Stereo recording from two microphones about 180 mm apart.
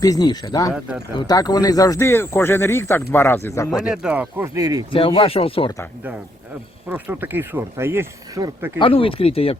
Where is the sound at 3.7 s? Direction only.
5° right (ahead or behind); by 4.9 s 20° right (ahead or behind).